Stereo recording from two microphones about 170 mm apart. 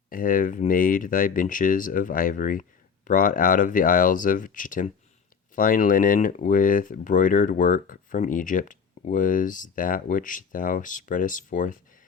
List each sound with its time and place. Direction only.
0.1 s speech: 55° left (ahead or behind)